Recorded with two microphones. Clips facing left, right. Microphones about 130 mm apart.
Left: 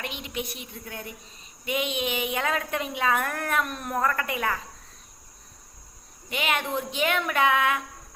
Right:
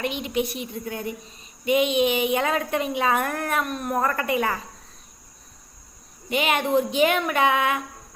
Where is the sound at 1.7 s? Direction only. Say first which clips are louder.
Right 8 dB; 5° right (ahead or behind).